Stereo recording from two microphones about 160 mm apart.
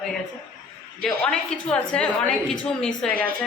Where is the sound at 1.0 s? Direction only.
5° left (ahead or behind).